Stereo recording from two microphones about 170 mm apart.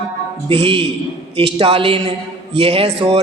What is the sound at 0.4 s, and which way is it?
A man's voice, 30° right (ahead or behind).